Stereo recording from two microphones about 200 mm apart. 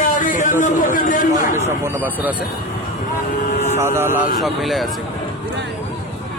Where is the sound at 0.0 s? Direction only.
40° left (ahead or behind).